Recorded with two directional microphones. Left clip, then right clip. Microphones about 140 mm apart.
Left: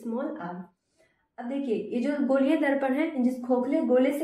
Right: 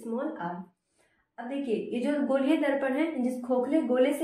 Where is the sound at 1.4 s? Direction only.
25° left (ahead or behind).